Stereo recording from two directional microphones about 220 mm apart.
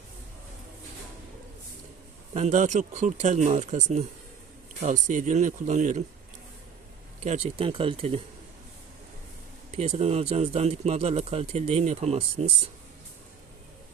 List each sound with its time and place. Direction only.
2.3 s speech: 30° right (ahead or behind)
7.3 s speech: 25° right (ahead or behind)
9.7 s speech: 30° right (ahead or behind)